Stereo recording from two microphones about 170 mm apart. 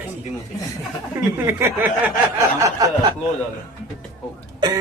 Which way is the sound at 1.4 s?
15° right (ahead or behind).